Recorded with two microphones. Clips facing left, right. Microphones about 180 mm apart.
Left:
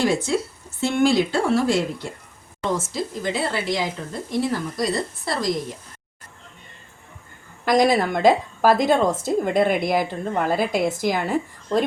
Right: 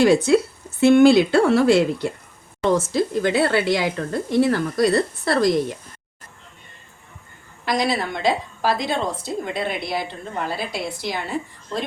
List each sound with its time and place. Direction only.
0.0 s speech: 65° right (ahead or behind)
7.6 s a woman's voice: 50° left (ahead or behind)